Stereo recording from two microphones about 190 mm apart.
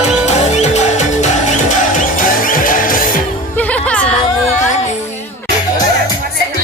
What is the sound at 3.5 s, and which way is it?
Music, 10° left (ahead or behind).